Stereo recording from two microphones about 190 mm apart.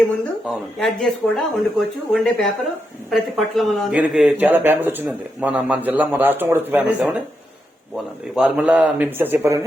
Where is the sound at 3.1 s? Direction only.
Centre (ahead or behind).